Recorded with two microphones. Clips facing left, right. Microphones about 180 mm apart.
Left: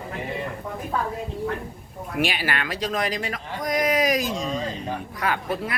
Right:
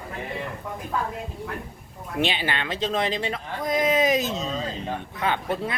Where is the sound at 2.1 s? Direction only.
25° right (ahead or behind).